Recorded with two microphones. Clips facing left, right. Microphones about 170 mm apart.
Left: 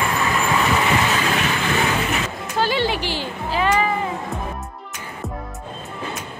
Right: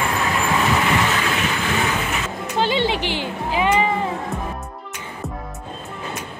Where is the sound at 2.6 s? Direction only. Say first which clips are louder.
Right 1 dB; 20° right (ahead or behind).